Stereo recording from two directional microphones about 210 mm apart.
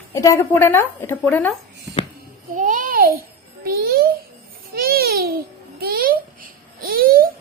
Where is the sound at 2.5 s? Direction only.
40° right (ahead or behind).